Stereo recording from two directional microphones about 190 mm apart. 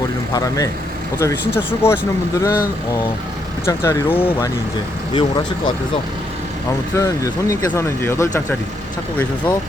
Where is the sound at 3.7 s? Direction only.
15° left (ahead or behind).